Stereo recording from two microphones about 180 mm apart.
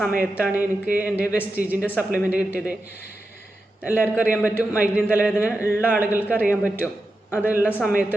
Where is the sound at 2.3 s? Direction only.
10° right (ahead or behind).